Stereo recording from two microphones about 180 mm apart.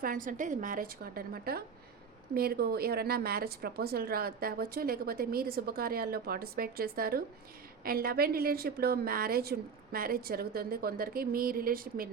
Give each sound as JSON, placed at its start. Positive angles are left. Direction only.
{"t": 0.0, "sound": "a woman's voice", "side_deg": -50}